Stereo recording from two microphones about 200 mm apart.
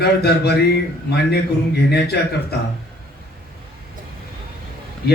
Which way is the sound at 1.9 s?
55° left (ahead or behind).